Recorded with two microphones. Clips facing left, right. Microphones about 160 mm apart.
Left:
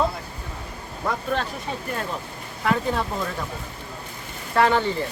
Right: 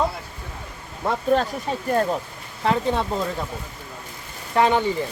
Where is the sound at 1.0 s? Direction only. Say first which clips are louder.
Right 2 dB; 25° right (ahead or behind).